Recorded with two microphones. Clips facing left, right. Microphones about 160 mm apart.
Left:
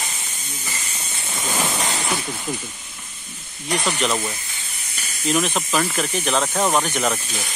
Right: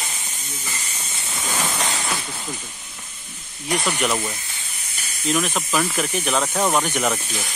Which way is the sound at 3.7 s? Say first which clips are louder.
Even; 5° right (ahead or behind).